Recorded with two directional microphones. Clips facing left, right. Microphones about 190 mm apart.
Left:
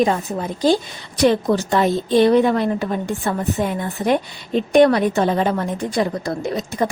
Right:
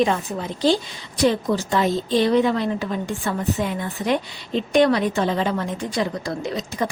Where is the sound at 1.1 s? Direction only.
60° left (ahead or behind).